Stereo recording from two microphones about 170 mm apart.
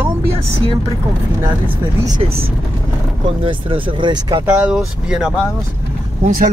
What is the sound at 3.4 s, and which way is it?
Speech, 30° right (ahead or behind).